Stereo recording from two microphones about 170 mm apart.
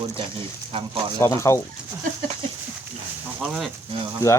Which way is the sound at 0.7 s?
35° right (ahead or behind).